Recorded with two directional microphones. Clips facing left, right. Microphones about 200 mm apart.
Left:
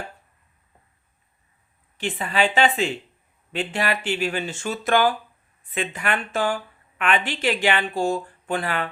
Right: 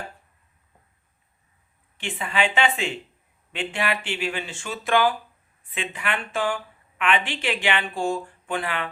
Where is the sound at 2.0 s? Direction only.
40° left (ahead or behind).